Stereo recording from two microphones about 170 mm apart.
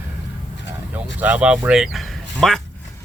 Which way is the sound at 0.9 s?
10° right (ahead or behind).